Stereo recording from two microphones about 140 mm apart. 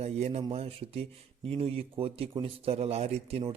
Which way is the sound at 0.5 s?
45° right (ahead or behind).